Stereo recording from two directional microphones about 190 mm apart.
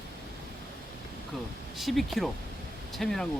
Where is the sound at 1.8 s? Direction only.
Centre (ahead or behind).